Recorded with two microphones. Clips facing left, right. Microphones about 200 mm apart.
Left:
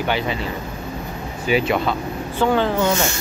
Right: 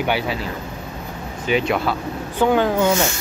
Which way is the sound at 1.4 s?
5° left (ahead or behind).